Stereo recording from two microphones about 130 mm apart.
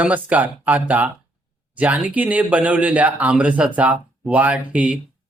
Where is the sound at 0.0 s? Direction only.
10° right (ahead or behind).